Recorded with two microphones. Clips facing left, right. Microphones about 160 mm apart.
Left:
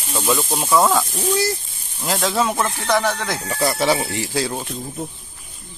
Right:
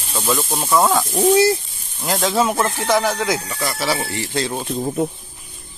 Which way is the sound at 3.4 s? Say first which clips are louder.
Left 4 dB; 25° left (ahead or behind).